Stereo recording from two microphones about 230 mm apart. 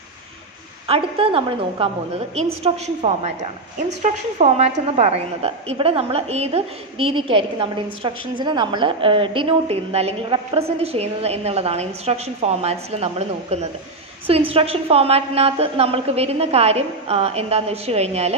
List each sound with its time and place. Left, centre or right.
0.8 s a woman's voice: right